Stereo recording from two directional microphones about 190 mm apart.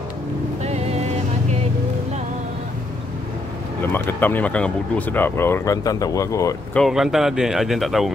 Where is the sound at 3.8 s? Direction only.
10° left (ahead or behind).